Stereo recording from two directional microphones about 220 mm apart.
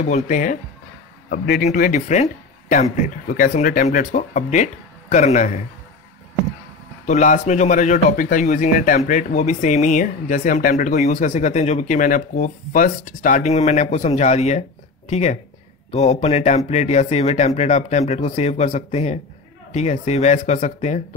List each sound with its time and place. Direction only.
0.0 s speech: 35° left (ahead or behind)
1.3 s speech: 45° left (ahead or behind)
7.1 s speech: 35° left (ahead or behind)